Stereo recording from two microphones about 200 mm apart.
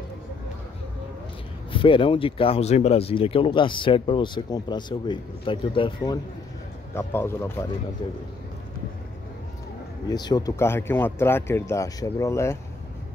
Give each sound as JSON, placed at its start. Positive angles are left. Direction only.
{"t": 1.7, "sound": "speech", "side_deg": 25}
{"t": 6.9, "sound": "speech", "side_deg": 10}
{"t": 10.0, "sound": "speech", "side_deg": 20}